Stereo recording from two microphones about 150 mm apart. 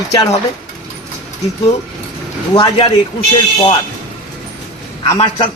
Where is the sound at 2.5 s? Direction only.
35° left (ahead or behind).